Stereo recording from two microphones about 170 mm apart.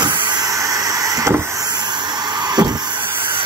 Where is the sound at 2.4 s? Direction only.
25° right (ahead or behind).